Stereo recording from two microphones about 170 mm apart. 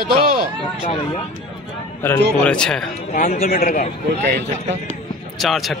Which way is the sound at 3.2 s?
60° left (ahead or behind).